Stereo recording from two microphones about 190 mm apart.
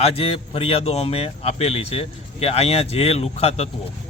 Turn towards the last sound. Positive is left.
turn(degrees=35)  # may be behind; listen again after turning